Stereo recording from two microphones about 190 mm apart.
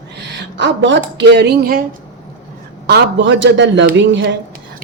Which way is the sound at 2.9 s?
70° right (ahead or behind).